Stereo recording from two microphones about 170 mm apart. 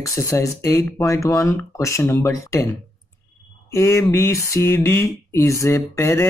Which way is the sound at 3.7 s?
15° left (ahead or behind).